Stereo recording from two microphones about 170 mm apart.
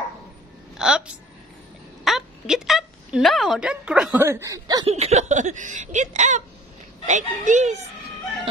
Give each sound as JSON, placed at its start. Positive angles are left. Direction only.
{"t": 0.7, "sound": "a woman's voice", "side_deg": -5}
{"t": 4.8, "sound": "speech", "side_deg": -40}